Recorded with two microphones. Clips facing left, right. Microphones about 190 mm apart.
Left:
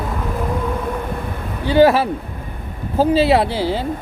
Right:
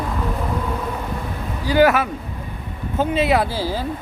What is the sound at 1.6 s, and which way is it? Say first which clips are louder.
Speech: left 3 dB; 25° left (ahead or behind).